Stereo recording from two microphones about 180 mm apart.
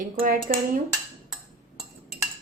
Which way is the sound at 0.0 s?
50° right (ahead or behind).